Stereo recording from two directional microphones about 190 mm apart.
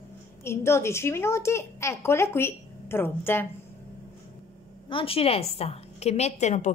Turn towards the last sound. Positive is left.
turn(degrees=35)  # may be behind; listen again after turning